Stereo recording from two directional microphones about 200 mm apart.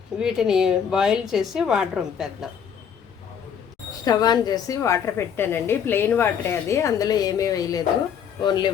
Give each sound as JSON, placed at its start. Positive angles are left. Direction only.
{"t": 0.2, "sound": "a woman's voice", "side_deg": -5}
{"t": 4.0, "sound": "a woman's voice", "side_deg": 20}